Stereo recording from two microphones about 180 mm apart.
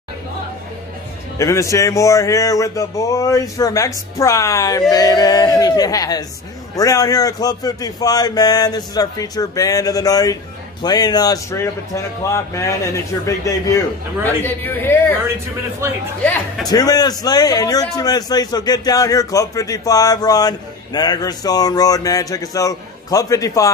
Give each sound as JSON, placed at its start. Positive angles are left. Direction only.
{"t": 1.4, "sound": "a man's voice", "side_deg": 15}
{"t": 16.6, "sound": "a man's voice", "side_deg": 20}